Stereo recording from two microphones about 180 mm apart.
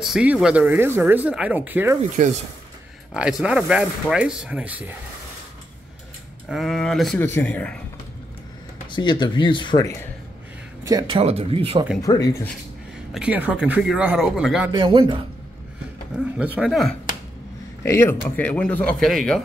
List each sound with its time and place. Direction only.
0.0 s speech: 5° right (ahead or behind)
3.1 s speech: 5° right (ahead or behind)
6.5 s speech: centre (ahead or behind)
8.9 s speech: 25° left (ahead or behind)
10.8 s speech: 20° right (ahead or behind)
12.0 s speech: 20° left (ahead or behind)
13.1 s speech: 5° right (ahead or behind)
14.7 s speech: 25° right (ahead or behind)
16.3 s speech: 5° right (ahead or behind)
17.8 s speech: 15° left (ahead or behind)